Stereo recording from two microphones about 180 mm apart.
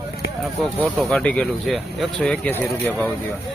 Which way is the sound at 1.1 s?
5° left (ahead or behind).